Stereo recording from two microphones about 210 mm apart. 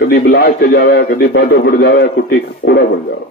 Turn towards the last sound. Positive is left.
turn(degrees=55)  # may be behind; listen again after turning